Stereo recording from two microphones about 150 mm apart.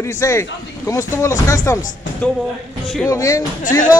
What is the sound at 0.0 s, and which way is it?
Speech, 20° left (ahead or behind).